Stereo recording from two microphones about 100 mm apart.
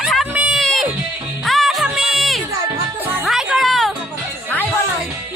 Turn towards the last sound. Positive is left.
turn(degrees=0)  # may be behind; listen again after turning